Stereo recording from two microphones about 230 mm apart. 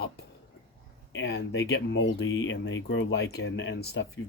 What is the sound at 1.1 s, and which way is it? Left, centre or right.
Speech, left.